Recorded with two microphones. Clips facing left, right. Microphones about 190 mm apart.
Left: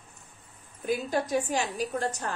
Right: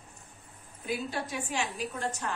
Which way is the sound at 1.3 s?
40° left (ahead or behind).